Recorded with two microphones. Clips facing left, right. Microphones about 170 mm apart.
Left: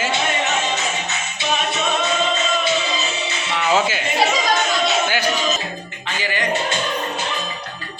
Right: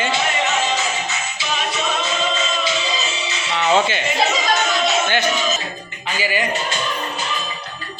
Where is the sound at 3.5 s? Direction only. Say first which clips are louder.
Right 2 dB; 5° left (ahead or behind).